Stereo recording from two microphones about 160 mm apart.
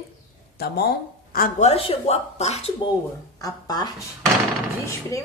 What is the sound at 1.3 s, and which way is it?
Speech, 60° left (ahead or behind).